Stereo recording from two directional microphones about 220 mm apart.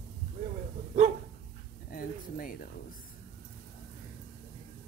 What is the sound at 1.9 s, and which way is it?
Speech, 40° left (ahead or behind).